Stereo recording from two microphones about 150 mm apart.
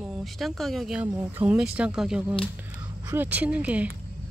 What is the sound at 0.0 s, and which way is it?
Speech, centre (ahead or behind).